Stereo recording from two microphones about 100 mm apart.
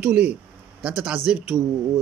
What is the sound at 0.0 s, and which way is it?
A man's voice, 15° right (ahead or behind).